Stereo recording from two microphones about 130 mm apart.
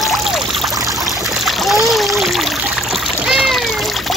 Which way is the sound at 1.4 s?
Centre (ahead or behind).